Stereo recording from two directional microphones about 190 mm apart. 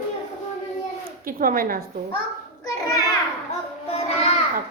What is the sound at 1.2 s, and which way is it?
Speech, 50° right (ahead or behind).